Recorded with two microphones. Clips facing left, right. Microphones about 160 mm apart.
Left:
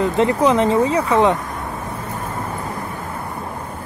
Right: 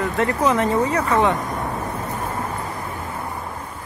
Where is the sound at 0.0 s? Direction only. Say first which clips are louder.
Left 4 dB; 20° left (ahead or behind).